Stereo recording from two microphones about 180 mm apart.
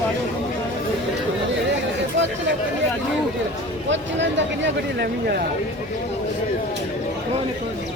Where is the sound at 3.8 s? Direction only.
90° right; by 5.5 s 60° right (ahead or behind).